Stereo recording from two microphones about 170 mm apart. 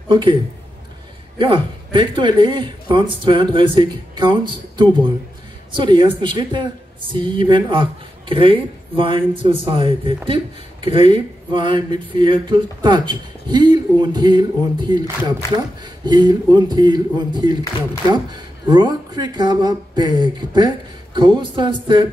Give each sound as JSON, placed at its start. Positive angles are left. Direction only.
{"t": 0.1, "sound": "a woman's voice", "side_deg": -25}
{"t": 1.4, "sound": "a woman's voice", "side_deg": -30}